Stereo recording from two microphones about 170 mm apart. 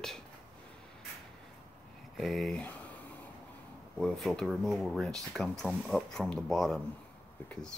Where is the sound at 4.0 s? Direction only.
Centre (ahead or behind).